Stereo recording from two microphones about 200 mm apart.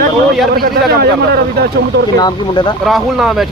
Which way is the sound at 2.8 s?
Centre (ahead or behind).